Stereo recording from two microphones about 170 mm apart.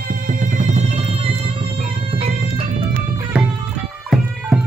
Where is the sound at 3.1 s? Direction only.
10° right (ahead or behind).